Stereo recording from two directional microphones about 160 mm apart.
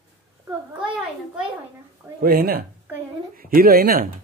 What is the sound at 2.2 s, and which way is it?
A woman's voice, 70° right (ahead or behind).